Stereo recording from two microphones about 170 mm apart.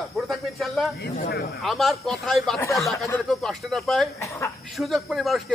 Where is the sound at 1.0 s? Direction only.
70° left (ahead or behind).